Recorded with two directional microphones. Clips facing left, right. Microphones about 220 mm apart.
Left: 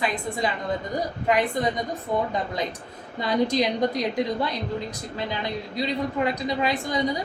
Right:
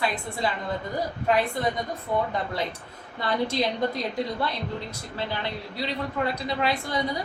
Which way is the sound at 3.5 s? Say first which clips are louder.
Left 3 dB; 15° left (ahead or behind).